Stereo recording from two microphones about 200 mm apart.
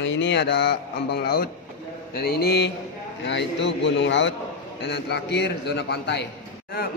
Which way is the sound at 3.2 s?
60° left (ahead or behind).